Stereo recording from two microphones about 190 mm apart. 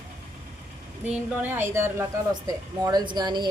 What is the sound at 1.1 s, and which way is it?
A woman's voice, 10° right (ahead or behind).